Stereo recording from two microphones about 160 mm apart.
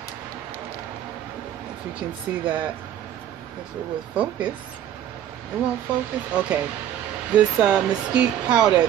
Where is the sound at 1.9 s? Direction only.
10° right (ahead or behind).